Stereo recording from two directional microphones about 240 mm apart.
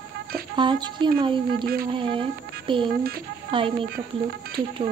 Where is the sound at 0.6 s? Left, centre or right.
Centre.